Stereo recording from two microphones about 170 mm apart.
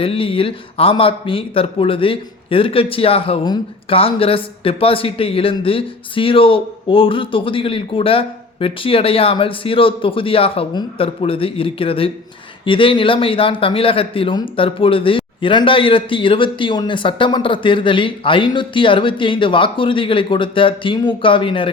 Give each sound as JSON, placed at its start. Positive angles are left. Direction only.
{"t": 0.0, "sound": "a man's voice", "side_deg": 30}